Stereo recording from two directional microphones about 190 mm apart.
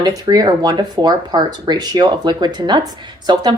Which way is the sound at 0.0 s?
20° right (ahead or behind).